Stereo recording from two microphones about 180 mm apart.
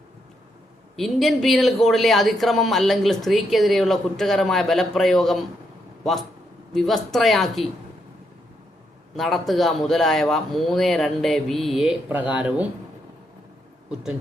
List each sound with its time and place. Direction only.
0.9 s speech: centre (ahead or behind)
6.7 s speech: centre (ahead or behind)
9.1 s speech: centre (ahead or behind)